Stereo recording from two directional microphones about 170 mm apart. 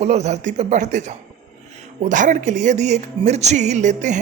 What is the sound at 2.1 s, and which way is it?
Speech, 50° right (ahead or behind).